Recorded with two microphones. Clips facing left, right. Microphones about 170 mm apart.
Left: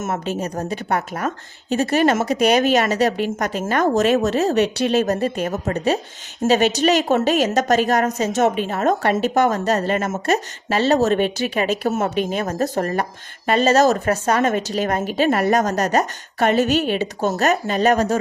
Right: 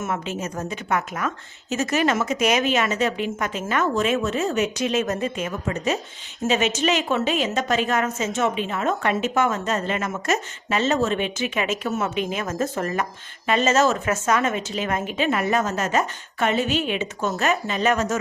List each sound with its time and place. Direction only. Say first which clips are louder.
0.3 s a woman's voice: left 4 dB; 35° left (ahead or behind)